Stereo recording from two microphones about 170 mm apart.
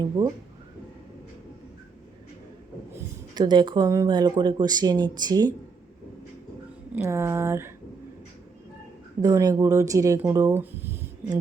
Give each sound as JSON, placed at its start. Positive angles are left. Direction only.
{"t": 0.0, "sound": "speech", "side_deg": -20}
{"t": 3.3, "sound": "speech", "side_deg": -25}
{"t": 6.9, "sound": "speech", "side_deg": -15}
{"t": 9.2, "sound": "speech", "side_deg": -20}
{"t": 10.2, "sound": "a sound", "side_deg": -15}